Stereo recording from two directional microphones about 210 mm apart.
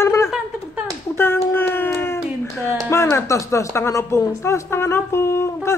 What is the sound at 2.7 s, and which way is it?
A woman's voice, 15° left (ahead or behind).